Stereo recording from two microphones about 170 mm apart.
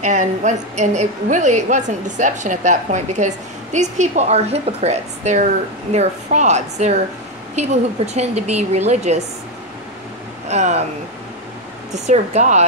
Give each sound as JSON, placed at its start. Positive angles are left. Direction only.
{"t": 0.0, "sound": "a woman's voice", "side_deg": -45}
{"t": 10.5, "sound": "a woman's voice", "side_deg": -40}
{"t": 11.9, "sound": "a woman's voice", "side_deg": -45}